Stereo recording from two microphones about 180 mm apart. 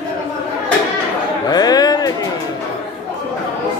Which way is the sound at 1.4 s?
20° left (ahead or behind).